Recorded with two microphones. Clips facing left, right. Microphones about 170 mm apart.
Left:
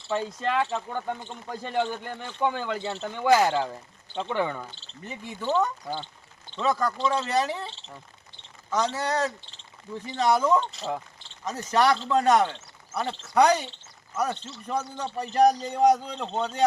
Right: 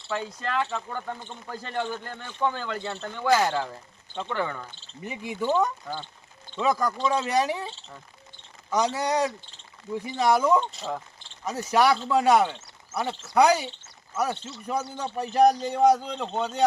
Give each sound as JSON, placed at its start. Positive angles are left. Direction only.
{"t": 0.3, "sound": "speech", "side_deg": 15}
{"t": 5.0, "sound": "speech", "side_deg": -15}
{"t": 5.9, "sound": "speech", "side_deg": 15}
{"t": 6.6, "sound": "speech", "side_deg": -10}
{"t": 8.7, "sound": "a man's voice", "side_deg": -15}